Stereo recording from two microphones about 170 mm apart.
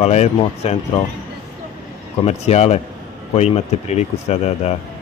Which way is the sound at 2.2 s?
40° left (ahead or behind).